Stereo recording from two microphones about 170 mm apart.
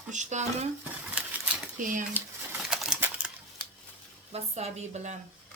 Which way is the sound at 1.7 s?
50° right (ahead or behind).